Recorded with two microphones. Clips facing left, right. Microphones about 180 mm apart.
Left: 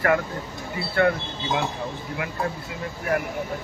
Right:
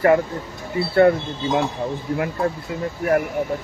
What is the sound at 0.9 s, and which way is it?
Speech, 35° right (ahead or behind).